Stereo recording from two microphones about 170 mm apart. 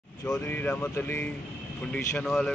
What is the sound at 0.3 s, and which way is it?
Speech, 10° left (ahead or behind).